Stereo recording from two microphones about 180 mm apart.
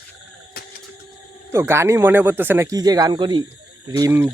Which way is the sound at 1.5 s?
15° right (ahead or behind).